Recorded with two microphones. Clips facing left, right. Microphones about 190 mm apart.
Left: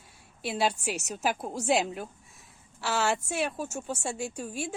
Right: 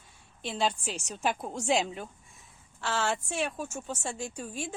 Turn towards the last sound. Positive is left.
turn(degrees=10)  # may be behind; listen again after turning